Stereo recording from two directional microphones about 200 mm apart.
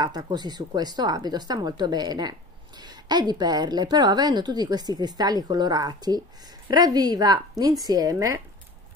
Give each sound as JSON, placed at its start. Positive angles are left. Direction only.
{"t": 0.0, "sound": "a woman's voice", "side_deg": -20}